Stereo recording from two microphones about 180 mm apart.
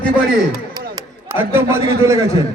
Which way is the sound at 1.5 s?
15° right (ahead or behind).